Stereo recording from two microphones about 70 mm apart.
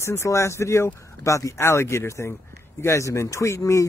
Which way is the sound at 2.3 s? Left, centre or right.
Left.